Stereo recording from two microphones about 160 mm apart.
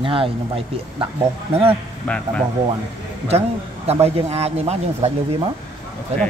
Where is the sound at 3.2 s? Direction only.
40° right (ahead or behind).